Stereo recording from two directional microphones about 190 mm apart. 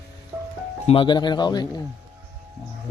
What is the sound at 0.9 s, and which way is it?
Speech, 25° left (ahead or behind).